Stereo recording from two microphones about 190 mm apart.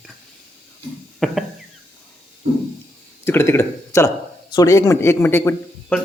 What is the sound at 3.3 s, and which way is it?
Speech, 15° left (ahead or behind).